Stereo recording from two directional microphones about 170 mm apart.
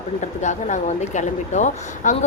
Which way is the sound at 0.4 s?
45° left (ahead or behind).